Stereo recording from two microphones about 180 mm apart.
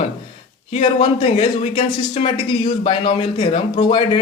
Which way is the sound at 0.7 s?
25° left (ahead or behind).